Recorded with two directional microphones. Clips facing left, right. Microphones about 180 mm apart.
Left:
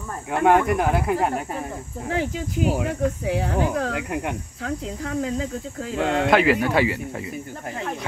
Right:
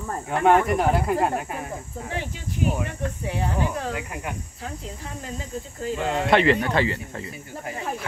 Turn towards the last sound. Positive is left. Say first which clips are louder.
# left 3 dB
turn(degrees=10)  # may be behind; listen again after turning